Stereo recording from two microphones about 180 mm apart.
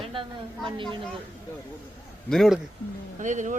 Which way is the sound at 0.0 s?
30° right (ahead or behind).